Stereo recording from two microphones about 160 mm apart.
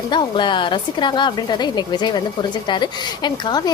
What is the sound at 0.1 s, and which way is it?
A woman's voice, 30° left (ahead or behind).